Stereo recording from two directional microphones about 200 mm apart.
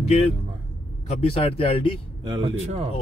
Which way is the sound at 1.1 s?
30° left (ahead or behind).